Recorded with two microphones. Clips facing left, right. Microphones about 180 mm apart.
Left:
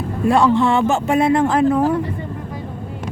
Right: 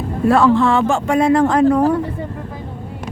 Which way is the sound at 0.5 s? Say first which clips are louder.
Right 1 dB; 20° left (ahead or behind).